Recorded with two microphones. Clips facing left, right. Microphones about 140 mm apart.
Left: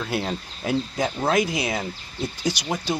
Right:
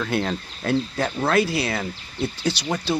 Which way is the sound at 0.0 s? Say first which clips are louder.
Right 2 dB; 10° left (ahead or behind).